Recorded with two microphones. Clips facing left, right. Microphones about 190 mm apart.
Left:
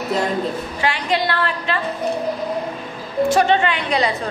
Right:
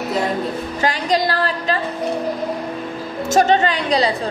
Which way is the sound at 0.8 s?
40° right (ahead or behind).